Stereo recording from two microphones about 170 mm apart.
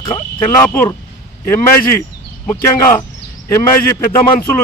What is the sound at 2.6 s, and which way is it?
Speech, 15° left (ahead or behind).